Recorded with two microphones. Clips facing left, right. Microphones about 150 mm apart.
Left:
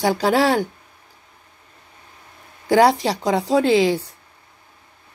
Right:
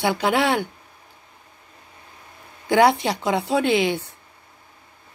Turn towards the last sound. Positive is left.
turn(degrees=35)  # may be behind; listen again after turning